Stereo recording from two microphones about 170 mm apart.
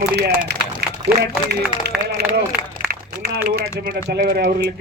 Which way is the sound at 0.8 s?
70° right (ahead or behind).